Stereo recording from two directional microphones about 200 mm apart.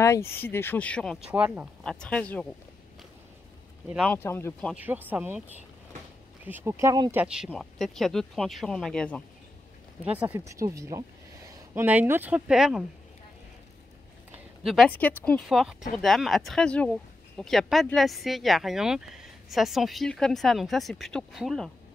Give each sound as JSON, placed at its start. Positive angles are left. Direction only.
{"t": 0.0, "sound": "speech", "side_deg": 15}
{"t": 1.3, "sound": "speech", "side_deg": -5}
{"t": 3.9, "sound": "speech", "side_deg": 0}
{"t": 4.2, "sound": "speech", "side_deg": 15}
{"t": 4.7, "sound": "speech", "side_deg": -10}
{"t": 6.4, "sound": "speech", "side_deg": -10}
{"t": 10.0, "sound": "speech", "side_deg": -10}
{"t": 14.6, "sound": "speech", "side_deg": 0}